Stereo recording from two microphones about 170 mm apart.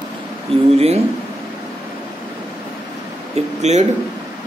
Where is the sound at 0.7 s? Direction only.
40° right (ahead or behind).